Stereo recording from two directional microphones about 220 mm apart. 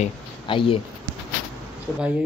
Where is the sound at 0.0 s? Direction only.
25° left (ahead or behind).